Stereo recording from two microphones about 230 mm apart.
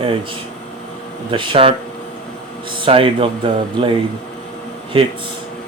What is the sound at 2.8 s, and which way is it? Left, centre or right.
Speech, right.